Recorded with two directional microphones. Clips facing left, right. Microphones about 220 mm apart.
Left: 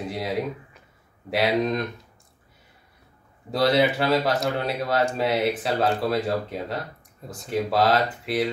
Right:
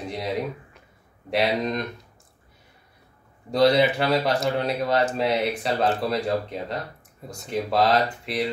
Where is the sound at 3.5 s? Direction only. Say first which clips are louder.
Right 2 dB; centre (ahead or behind).